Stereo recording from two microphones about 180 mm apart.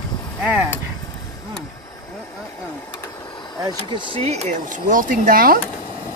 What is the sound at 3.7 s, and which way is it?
Speech, 30° right (ahead or behind).